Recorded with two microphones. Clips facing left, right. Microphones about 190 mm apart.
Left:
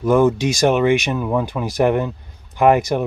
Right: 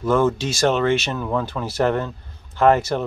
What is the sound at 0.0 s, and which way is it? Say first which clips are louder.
Speech: left 4 dB; 15° left (ahead or behind).